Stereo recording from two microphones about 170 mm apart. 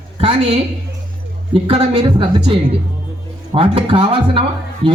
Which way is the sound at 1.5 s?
35° right (ahead or behind).